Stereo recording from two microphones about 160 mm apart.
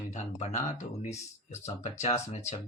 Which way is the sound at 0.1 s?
45° left (ahead or behind).